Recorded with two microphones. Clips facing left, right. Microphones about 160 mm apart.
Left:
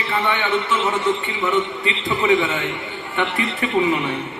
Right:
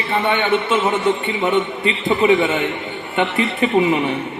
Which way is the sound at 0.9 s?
25° right (ahead or behind).